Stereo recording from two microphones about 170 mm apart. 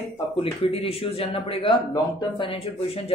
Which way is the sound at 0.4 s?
35° left (ahead or behind).